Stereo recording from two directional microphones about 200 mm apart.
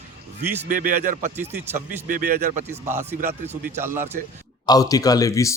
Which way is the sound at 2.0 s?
40° right (ahead or behind).